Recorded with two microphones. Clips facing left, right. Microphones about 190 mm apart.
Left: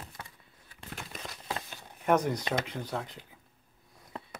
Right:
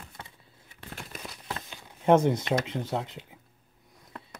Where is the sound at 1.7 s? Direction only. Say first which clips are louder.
Right 6 dB; 25° right (ahead or behind).